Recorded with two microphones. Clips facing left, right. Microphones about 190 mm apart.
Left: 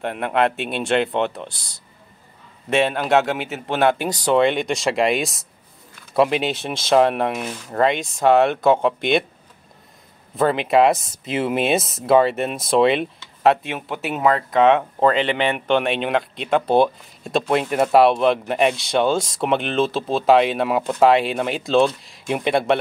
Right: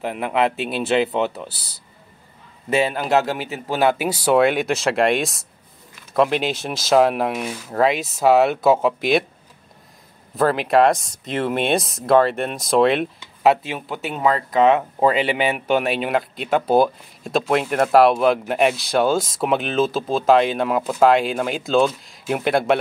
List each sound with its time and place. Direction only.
0.0 s speech: 5° right (ahead or behind)
10.3 s speech: centre (ahead or behind)